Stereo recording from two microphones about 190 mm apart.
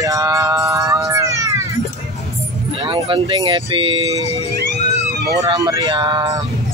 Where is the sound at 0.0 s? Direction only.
15° right (ahead or behind).